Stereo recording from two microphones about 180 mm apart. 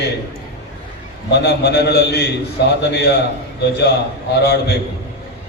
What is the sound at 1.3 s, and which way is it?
A man's voice, 70° left (ahead or behind).